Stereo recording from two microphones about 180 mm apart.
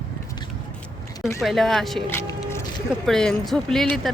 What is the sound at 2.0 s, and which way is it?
Vehicle, 15° left (ahead or behind).